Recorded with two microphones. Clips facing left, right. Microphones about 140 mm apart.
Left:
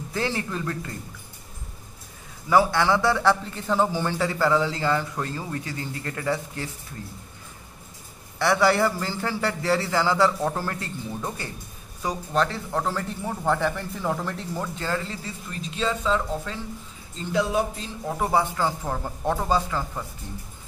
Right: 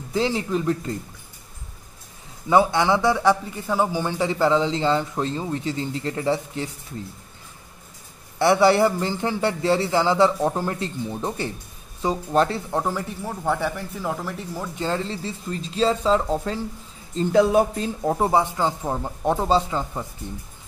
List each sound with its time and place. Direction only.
0.1 s a man's voice: 20° right (ahead or behind)
2.5 s a man's voice: 20° right (ahead or behind)
8.4 s a man's voice: 25° right (ahead or behind)
13.2 s speech: 5° right (ahead or behind)
14.8 s speech: 25° right (ahead or behind)
17.2 s music: 45° right (ahead or behind)
18.1 s a man's voice: 25° right (ahead or behind)